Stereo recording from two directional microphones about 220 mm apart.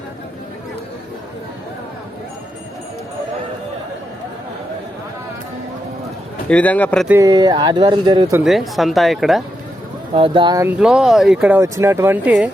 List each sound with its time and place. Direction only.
6.5 s speech: 5° left (ahead or behind)
7.1 s speech: 15° right (ahead or behind)
8.4 s speech: centre (ahead or behind)
10.2 s speech: 25° right (ahead or behind); by 12.5 s 5° right (ahead or behind)